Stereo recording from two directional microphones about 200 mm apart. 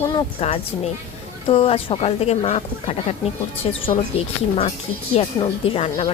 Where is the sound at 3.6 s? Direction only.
30° left (ahead or behind).